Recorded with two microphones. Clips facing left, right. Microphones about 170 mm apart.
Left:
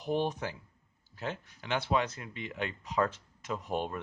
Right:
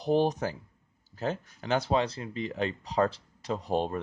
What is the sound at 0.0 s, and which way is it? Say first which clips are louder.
Speech: right 6 dB; 35° right (ahead or behind).